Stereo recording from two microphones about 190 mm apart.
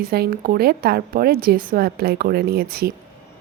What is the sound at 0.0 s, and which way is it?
A woman's voice, 50° right (ahead or behind).